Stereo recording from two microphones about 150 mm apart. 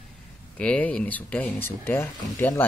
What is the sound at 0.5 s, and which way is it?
Speech, 10° left (ahead or behind).